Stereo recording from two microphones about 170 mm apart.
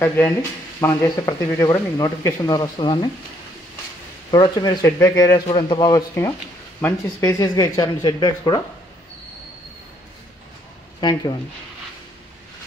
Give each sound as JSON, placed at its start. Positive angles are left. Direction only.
{"t": 0.0, "sound": "speech", "side_deg": 15}
{"t": 4.3, "sound": "speech", "side_deg": 25}
{"t": 11.0, "sound": "speech", "side_deg": 25}